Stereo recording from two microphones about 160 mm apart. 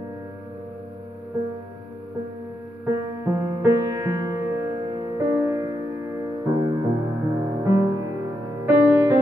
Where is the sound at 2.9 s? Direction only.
20° right (ahead or behind).